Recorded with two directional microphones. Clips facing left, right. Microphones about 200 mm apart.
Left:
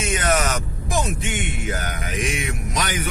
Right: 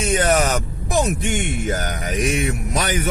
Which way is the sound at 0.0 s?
35° right (ahead or behind).